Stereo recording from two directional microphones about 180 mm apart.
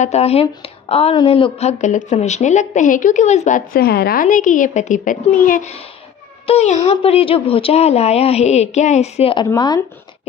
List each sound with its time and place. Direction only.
0.0 s speech: 35° left (ahead or behind); by 9.8 s 20° left (ahead or behind)